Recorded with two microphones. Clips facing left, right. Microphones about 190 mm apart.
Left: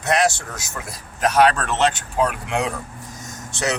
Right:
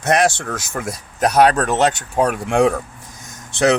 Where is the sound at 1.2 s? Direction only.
40° right (ahead or behind).